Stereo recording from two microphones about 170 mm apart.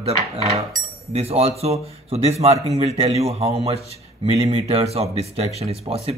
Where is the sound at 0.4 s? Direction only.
40° right (ahead or behind).